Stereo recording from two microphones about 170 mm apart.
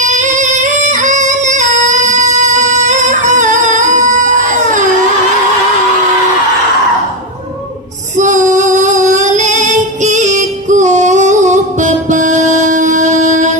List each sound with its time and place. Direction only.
0.0 s singing: 45° right (ahead or behind)
8.2 s female singing: 45° right (ahead or behind)